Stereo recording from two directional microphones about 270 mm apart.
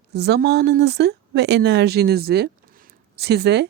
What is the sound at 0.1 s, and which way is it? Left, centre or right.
Speech, right.